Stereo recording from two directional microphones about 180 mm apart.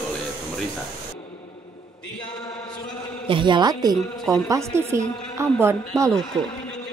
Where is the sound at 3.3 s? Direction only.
25° right (ahead or behind).